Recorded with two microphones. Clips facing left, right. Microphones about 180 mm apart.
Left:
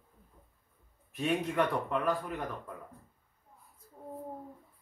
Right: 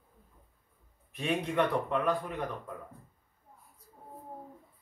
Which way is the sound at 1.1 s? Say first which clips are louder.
Even; centre (ahead or behind).